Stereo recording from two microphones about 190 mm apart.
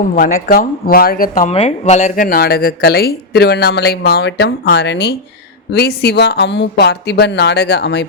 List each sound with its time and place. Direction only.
0.2 s speech: 45° left (ahead or behind)
1.5 s speech: 35° left (ahead or behind); by 8.0 s 65° left (ahead or behind)